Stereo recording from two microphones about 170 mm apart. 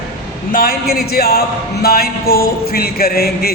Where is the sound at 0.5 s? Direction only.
60° left (ahead or behind).